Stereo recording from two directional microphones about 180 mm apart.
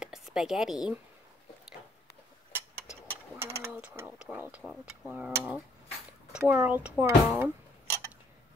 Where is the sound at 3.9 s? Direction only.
10° right (ahead or behind).